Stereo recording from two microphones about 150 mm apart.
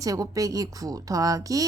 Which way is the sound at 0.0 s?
25° right (ahead or behind).